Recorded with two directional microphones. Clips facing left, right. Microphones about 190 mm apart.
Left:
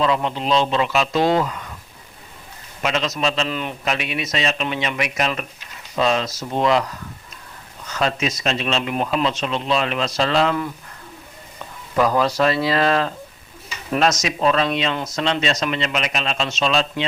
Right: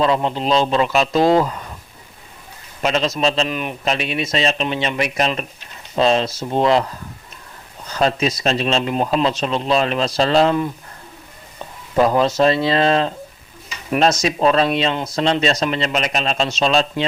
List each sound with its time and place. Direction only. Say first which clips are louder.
0.0 s speech: right 3 dB; 35° right (ahead or behind)
2.8 s speech: right 3 dB; 35° right (ahead or behind)
3.5 s a man's voice: right 2 dB; 15° right (ahead or behind)
3.8 s speech: right 4 dB; 30° right (ahead or behind)
11.9 s speech: right 3 dB; 25° right (ahead or behind)